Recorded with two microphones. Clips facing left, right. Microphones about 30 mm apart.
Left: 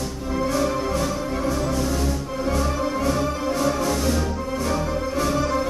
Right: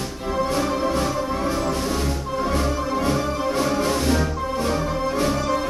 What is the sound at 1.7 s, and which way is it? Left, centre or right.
Music, right.